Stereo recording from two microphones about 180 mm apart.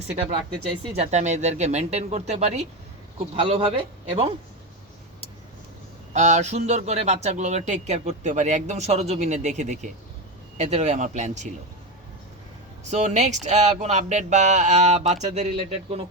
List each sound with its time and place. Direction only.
0.9 s speech: 40° right (ahead or behind)
3.3 s speech: 30° right (ahead or behind)
6.1 s speech: 40° right (ahead or behind)
12.9 s speech: 40° right (ahead or behind)